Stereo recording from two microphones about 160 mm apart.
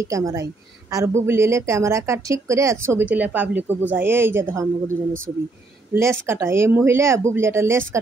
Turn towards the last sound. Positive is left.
turn(degrees=-15)  # may be behind; listen again after turning